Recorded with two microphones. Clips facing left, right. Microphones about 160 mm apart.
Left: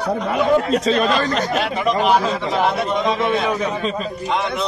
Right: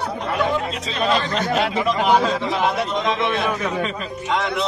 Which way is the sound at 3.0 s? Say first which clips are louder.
Left 4 dB; 10° left (ahead or behind).